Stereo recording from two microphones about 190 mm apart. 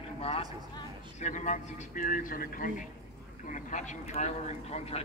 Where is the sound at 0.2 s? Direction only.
30° left (ahead or behind).